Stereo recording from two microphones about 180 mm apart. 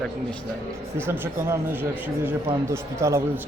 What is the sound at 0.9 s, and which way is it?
A man's voice, 10° right (ahead or behind).